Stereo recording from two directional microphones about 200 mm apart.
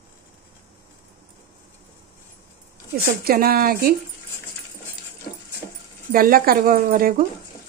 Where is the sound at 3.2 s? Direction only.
50° right (ahead or behind).